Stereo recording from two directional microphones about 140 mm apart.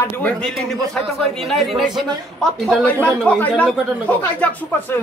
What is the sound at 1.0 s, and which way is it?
Speech, 5° left (ahead or behind).